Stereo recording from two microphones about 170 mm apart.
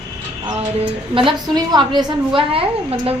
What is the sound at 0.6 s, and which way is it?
A woman's voice, 30° right (ahead or behind).